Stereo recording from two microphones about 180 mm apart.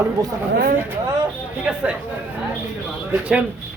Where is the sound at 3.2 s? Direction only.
5° right (ahead or behind).